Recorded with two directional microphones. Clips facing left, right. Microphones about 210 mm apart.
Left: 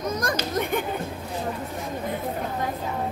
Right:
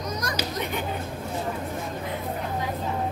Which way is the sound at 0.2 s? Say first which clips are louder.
Left 4 dB; 50° left (ahead or behind).